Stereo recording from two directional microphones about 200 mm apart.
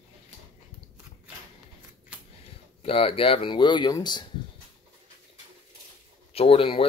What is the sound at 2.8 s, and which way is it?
Speech, 30° left (ahead or behind).